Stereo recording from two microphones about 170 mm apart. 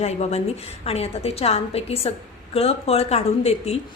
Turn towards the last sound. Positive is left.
turn(degrees=40)  # may be behind; listen again after turning